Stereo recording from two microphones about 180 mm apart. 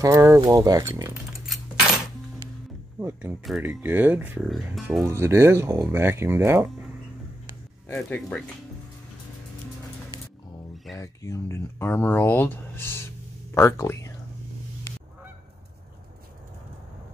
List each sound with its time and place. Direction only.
0.0 s speech: 15° right (ahead or behind)
3.0 s speech: 10° right (ahead or behind)
5.0 s speech: 15° right (ahead or behind)
7.9 s speech: 5° left (ahead or behind)
10.1 s a sound: 20° left (ahead or behind)
11.0 s speech: 15° left (ahead or behind)